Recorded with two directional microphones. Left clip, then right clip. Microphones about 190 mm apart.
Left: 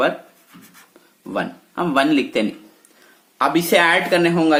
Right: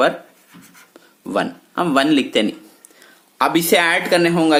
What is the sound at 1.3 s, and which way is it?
Speech, 30° right (ahead or behind).